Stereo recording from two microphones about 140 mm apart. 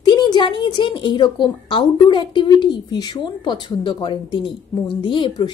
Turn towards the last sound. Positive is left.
turn(degrees=35)  # may be behind; listen again after turning